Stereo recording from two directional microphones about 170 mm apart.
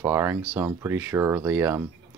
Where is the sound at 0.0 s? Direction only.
15° right (ahead or behind).